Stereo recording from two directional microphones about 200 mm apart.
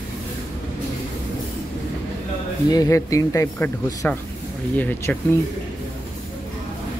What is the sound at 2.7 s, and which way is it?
Speech, 15° left (ahead or behind).